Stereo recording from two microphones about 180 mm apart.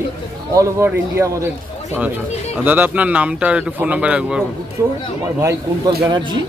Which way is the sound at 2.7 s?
10° right (ahead or behind).